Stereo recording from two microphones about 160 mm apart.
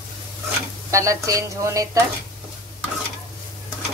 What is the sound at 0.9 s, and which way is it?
Speech, 20° right (ahead or behind).